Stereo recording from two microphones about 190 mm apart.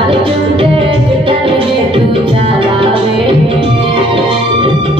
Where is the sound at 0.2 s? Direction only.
30° right (ahead or behind).